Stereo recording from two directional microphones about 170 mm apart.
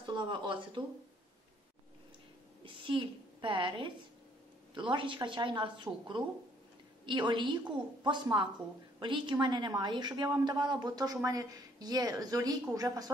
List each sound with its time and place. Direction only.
0.0 s speech: 25° right (ahead or behind)
2.6 s a woman's voice: 30° right (ahead or behind)